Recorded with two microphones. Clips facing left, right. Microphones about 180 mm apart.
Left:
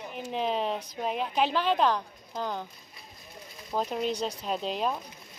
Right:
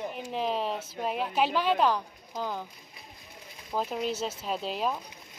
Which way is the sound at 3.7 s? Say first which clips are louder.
Left 1 dB; centre (ahead or behind).